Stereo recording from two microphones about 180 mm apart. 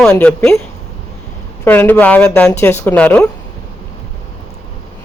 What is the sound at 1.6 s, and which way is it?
Speech, 10° left (ahead or behind).